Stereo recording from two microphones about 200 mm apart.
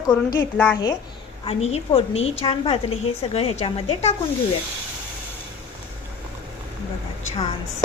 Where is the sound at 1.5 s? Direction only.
30° left (ahead or behind).